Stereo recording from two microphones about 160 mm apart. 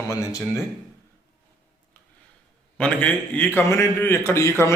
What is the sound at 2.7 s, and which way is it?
A man's voice, 10° left (ahead or behind).